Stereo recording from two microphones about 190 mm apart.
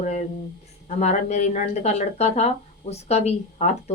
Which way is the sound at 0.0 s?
40° left (ahead or behind).